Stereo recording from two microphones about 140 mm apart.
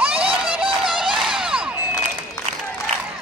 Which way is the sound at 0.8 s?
5° right (ahead or behind).